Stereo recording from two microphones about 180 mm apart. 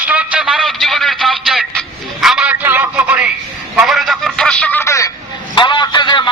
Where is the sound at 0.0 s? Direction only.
5° right (ahead or behind).